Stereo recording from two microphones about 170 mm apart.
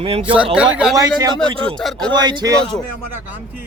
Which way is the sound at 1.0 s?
20° right (ahead or behind).